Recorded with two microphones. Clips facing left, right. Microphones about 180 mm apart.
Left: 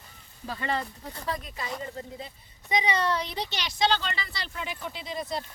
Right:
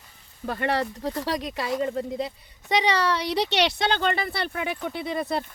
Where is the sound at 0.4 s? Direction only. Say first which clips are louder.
Right 6 dB; 60° right (ahead or behind).